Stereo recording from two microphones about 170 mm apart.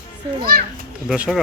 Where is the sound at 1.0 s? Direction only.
5° right (ahead or behind).